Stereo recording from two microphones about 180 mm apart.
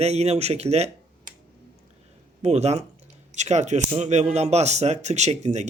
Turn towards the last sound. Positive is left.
turn(degrees=-40)  # may be behind; listen again after turning